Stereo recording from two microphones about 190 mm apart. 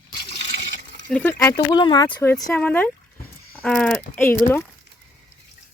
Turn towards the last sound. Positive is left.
turn(degrees=10)  # may be behind; listen again after turning